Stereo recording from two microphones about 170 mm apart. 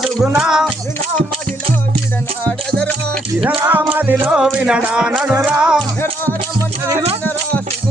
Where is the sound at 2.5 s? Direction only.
5° left (ahead or behind).